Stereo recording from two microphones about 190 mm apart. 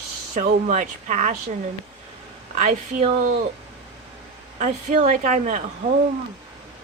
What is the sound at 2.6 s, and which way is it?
Speech, 35° right (ahead or behind).